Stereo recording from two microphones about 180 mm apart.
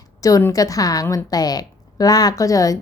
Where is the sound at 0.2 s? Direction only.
20° left (ahead or behind).